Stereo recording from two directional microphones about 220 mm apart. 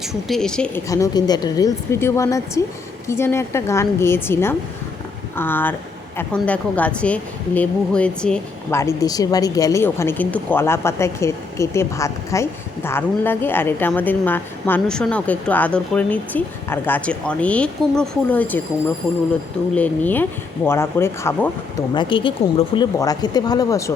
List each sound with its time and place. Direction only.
0.0 s speech: centre (ahead or behind)
0.9 s a woman's voice: 15° left (ahead or behind)
19.7 s a woman's voice: 5° left (ahead or behind)
21.9 s a woman's voice: 20° left (ahead or behind)